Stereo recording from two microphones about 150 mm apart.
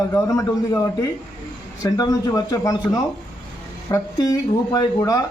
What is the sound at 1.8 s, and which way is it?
Speech, 25° left (ahead or behind).